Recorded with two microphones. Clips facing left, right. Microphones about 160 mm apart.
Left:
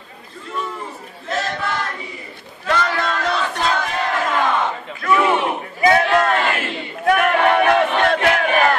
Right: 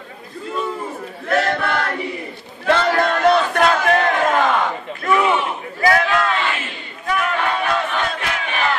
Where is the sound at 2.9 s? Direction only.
50° right (ahead or behind).